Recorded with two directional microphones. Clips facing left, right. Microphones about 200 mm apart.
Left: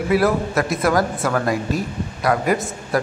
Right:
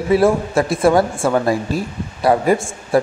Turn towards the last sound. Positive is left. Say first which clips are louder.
# right 5 dB
turn(degrees=-30)  # may be behind; listen again after turning